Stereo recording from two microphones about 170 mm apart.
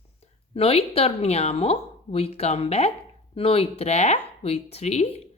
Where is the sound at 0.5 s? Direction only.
35° left (ahead or behind).